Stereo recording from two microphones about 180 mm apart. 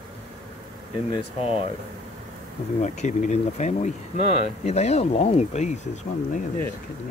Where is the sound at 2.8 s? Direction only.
40° left (ahead or behind).